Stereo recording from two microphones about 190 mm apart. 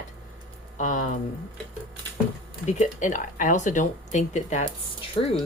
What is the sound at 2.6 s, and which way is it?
Speech, 40° left (ahead or behind).